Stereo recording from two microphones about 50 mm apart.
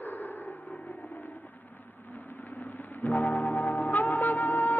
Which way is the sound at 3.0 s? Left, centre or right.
Left.